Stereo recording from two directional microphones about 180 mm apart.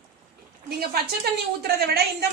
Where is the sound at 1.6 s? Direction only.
60° right (ahead or behind).